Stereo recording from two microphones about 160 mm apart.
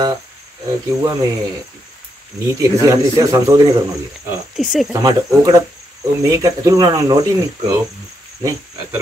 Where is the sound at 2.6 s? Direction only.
20° right (ahead or behind).